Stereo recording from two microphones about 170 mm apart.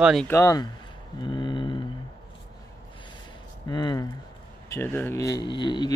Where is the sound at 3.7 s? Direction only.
25° left (ahead or behind).